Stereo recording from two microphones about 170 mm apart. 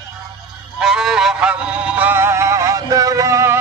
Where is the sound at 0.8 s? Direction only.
5° right (ahead or behind).